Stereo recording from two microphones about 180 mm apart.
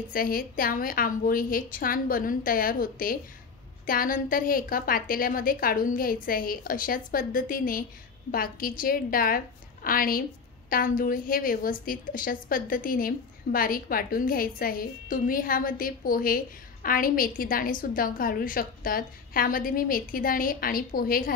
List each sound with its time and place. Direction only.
0.1 s a woman's voice: 55° left (ahead or behind)